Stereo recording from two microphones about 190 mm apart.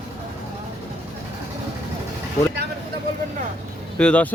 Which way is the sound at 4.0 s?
5° left (ahead or behind).